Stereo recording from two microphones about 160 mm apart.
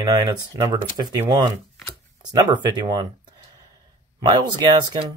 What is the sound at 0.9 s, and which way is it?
Speech, 25° right (ahead or behind).